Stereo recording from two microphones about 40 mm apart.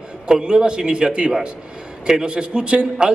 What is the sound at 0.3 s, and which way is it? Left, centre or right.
A man's voice, centre.